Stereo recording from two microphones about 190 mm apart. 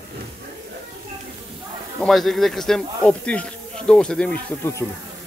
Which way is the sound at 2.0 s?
Centre (ahead or behind).